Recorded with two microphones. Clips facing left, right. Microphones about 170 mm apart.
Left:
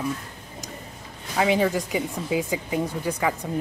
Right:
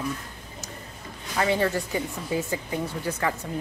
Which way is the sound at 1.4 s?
15° left (ahead or behind).